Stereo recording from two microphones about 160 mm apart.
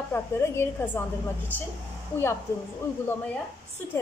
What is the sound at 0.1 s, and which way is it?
Speech, 15° left (ahead or behind).